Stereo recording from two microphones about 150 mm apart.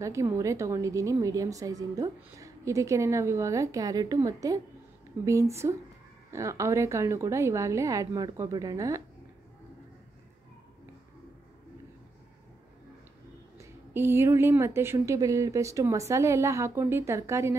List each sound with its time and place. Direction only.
0.0 s a woman's voice: 20° right (ahead or behind)
13.6 s a woman's voice: 15° right (ahead or behind)